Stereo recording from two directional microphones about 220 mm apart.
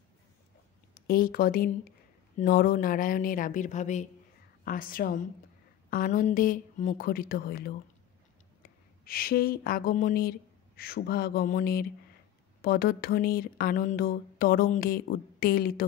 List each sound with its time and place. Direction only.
0.9 s speech: 45° left (ahead or behind)
9.0 s speech: 40° left (ahead or behind)